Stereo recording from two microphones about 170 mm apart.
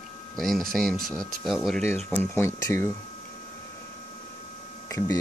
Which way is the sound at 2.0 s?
10° left (ahead or behind).